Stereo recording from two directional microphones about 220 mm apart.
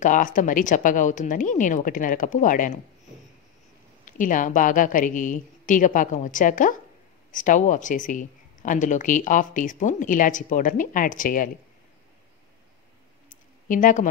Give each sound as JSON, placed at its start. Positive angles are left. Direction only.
{"t": 0.0, "sound": "speech", "side_deg": 35}
{"t": 4.0, "sound": "speech", "side_deg": 35}
{"t": 13.3, "sound": "a sound", "side_deg": 35}